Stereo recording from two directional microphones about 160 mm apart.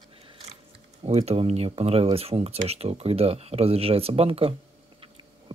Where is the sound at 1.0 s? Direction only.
40° right (ahead or behind).